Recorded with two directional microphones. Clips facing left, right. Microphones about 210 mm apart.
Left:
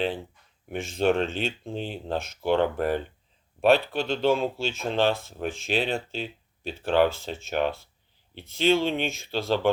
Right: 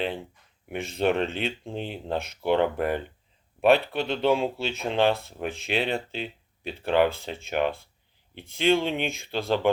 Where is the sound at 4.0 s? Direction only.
60° right (ahead or behind).